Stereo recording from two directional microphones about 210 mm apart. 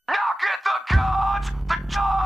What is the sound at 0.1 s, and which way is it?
Music, centre (ahead or behind).